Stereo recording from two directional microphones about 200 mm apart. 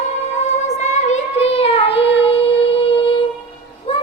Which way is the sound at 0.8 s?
35° left (ahead or behind).